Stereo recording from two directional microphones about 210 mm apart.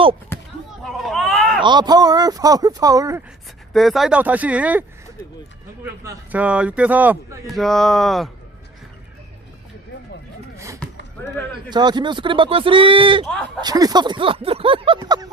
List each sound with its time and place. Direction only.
0.3 s basketball bounce: 10° left (ahead or behind)
1.0 s a sound: centre (ahead or behind)
1.6 s speech: 20° right (ahead or behind)
3.7 s speech: centre (ahead or behind)
6.3 s speech: 5° right (ahead or behind)
11.7 s speech: 20° right (ahead or behind)